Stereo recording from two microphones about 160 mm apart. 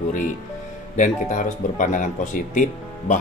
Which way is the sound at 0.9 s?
55° left (ahead or behind).